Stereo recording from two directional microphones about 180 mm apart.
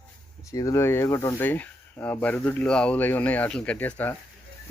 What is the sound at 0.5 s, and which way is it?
Speech, 20° left (ahead or behind).